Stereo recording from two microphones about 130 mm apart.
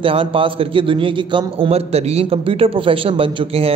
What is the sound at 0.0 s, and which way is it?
A man's voice, 45° right (ahead or behind).